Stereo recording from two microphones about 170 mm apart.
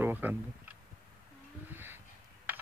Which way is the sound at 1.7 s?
10° right (ahead or behind).